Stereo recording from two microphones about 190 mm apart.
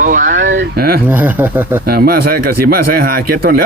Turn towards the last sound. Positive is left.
turn(degrees=-50)  # may be behind; listen again after turning